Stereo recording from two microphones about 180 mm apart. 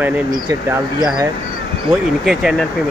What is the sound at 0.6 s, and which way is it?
Speech, 20° right (ahead or behind).